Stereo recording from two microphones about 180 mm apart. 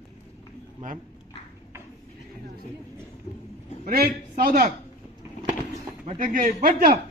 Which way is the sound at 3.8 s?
55° right (ahead or behind).